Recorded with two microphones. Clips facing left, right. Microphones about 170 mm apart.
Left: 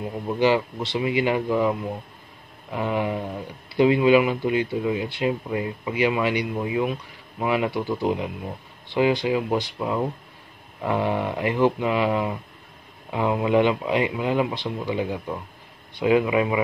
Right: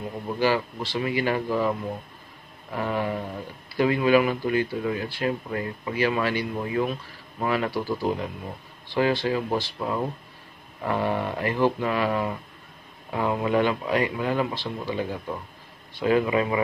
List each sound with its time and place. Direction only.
0.3 s a man's voice: 20° left (ahead or behind)